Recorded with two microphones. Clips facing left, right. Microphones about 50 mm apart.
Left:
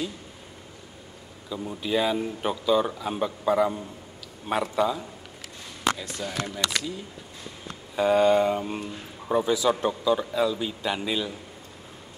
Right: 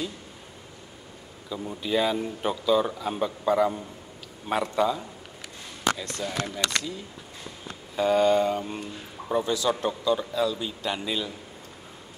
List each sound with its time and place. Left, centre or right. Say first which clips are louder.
1.5 s speech: even; centre
7.9 s speech: left 1 dB; centre